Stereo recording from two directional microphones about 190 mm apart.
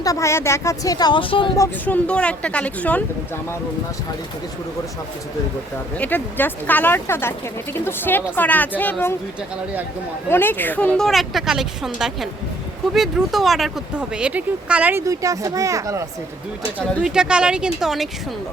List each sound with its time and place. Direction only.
0.0 s speech: 15° left (ahead or behind)
1.5 s speech: 10° left (ahead or behind)
6.0 s speech: 10° left (ahead or behind)
10.2 s a woman's voice: 10° left (ahead or behind); by 16.0 s 15° right (ahead or behind)
17.0 s a woman's voice: 5° right (ahead or behind)